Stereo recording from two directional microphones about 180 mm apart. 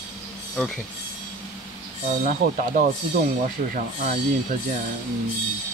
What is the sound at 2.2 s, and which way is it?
Speech, 50° right (ahead or behind).